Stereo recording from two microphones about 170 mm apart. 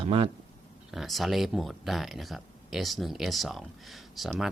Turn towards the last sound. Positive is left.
turn(degrees=0)  # may be behind; listen again after turning